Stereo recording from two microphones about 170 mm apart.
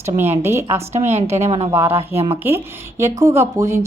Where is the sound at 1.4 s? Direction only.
40° right (ahead or behind).